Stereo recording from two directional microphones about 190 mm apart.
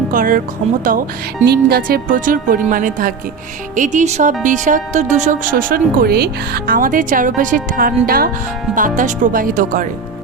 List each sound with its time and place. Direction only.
0.1 s speech: 45° right (ahead or behind)